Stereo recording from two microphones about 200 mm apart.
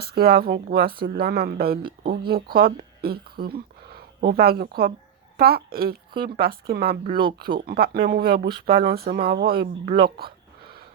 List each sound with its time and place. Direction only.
0.0 s a woman's voice: 50° right (ahead or behind)